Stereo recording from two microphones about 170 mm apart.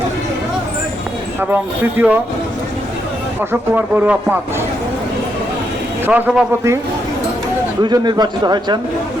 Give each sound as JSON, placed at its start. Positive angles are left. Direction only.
{"t": 1.4, "sound": "speech", "side_deg": -10}
{"t": 3.5, "sound": "speech", "side_deg": -10}
{"t": 6.1, "sound": "speech", "side_deg": -5}
{"t": 7.8, "sound": "a man's voice", "side_deg": -25}